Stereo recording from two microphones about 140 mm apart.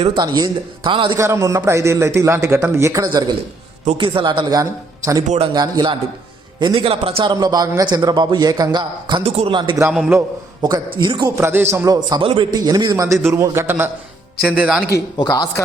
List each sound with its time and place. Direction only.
0.2 s a man's voice: 30° right (ahead or behind)
1.1 s a man's voice: 20° right (ahead or behind)
9.9 s a man's voice: 10° right (ahead or behind)
10.9 s a man's voice: 35° right (ahead or behind)
11.3 s a man's voice: 15° right (ahead or behind)
12.0 s a man's voice: 30° right (ahead or behind)
14.4 s a man's voice: 5° right (ahead or behind)
14.9 s speech: 30° left (ahead or behind)